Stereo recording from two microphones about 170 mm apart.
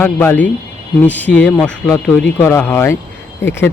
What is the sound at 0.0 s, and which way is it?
Speech, 10° left (ahead or behind).